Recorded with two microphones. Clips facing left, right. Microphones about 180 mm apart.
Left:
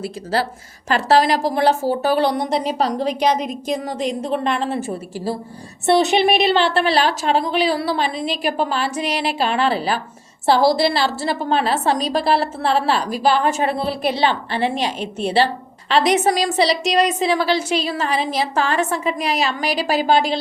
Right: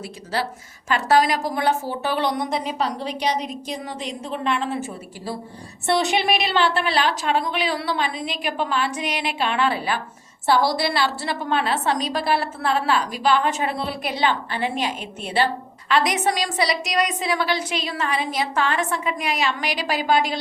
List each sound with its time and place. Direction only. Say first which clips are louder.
0.0 s a woman's voice: left 5 dB; 35° left (ahead or behind)
5.8 s a woman's voice: left 6 dB; 20° left (ahead or behind)
15.9 s a woman's voice: left 5 dB; 30° left (ahead or behind)